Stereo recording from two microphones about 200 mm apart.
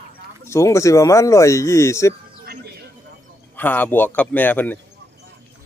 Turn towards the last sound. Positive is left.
turn(degrees=10)  # may be behind; listen again after turning